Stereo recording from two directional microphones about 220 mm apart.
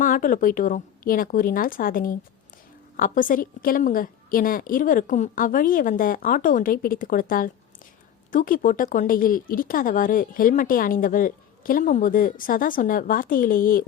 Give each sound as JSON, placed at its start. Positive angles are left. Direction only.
{"t": 0.0, "sound": "speech", "side_deg": 40}